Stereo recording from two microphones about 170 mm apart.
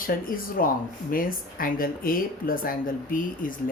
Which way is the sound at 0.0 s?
55° left (ahead or behind).